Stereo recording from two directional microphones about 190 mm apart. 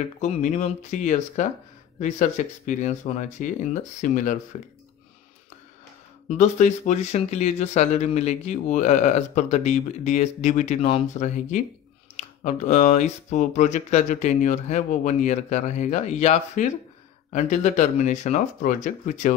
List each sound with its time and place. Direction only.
0.2 s speech: 40° left (ahead or behind)
6.2 s speech: 40° left (ahead or behind)